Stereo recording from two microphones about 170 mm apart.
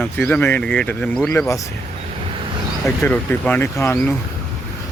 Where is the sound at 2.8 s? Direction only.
10° left (ahead or behind).